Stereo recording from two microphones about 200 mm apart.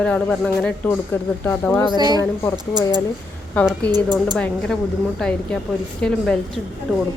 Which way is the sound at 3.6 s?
5° left (ahead or behind).